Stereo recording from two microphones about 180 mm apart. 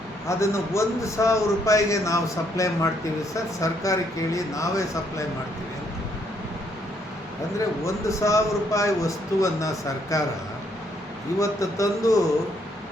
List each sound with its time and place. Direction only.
0.3 s a man's voice: 15° left (ahead or behind)
7.9 s a man's voice: 15° left (ahead or behind)
11.3 s a man's voice: 15° left (ahead or behind)